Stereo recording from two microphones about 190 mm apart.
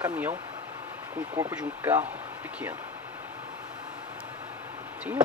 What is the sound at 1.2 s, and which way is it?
Speech, 10° right (ahead or behind).